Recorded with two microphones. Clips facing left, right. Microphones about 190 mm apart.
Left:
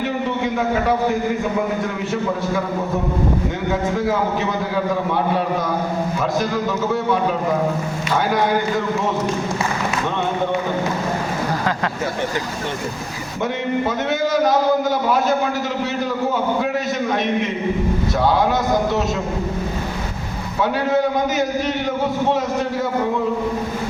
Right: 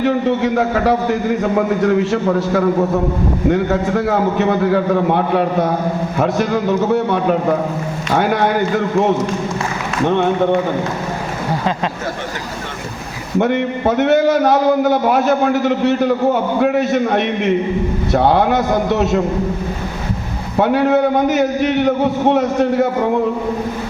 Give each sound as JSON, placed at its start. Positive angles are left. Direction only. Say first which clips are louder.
{"t": 0.3, "sound": "a man's voice", "louder": "right 5 dB", "side_deg": -70}
{"t": 3.5, "sound": "a man's voice", "louder": "right 6 dB", "side_deg": -65}
{"t": 10.1, "sound": "a man's voice", "louder": "right 9 dB", "side_deg": -55}
{"t": 13.4, "sound": "a man's voice", "louder": "right 5 dB", "side_deg": -65}
{"t": 20.6, "sound": "a man's voice", "louder": "right 5 dB", "side_deg": -60}